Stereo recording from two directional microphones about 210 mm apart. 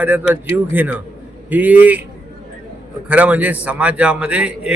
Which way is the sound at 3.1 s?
5° right (ahead or behind).